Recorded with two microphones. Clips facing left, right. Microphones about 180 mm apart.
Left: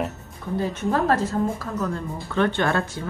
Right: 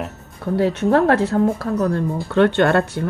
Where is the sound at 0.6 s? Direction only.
75° right (ahead or behind).